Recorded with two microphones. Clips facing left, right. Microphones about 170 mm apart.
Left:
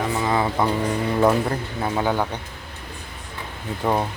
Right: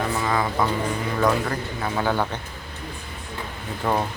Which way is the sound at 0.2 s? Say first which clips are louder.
Left 3 dB; 20° left (ahead or behind).